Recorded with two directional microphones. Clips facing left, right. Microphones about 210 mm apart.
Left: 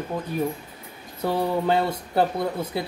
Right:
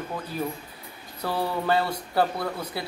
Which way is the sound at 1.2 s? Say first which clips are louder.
Left 4 dB; 20° left (ahead or behind).